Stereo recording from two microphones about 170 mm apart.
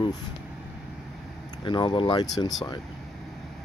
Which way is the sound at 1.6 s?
30° left (ahead or behind).